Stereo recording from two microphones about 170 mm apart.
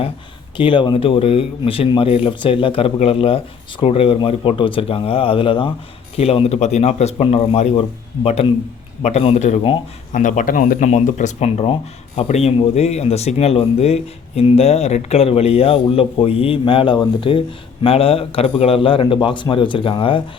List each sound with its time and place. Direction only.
0.5 s a man's voice: 30° left (ahead or behind)